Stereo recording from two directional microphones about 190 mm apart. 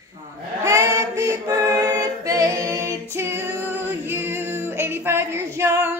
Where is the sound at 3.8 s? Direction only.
10° right (ahead or behind).